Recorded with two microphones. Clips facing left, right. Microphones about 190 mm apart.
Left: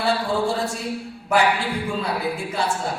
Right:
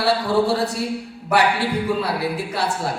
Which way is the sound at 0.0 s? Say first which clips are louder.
Right 3 dB; 65° right (ahead or behind).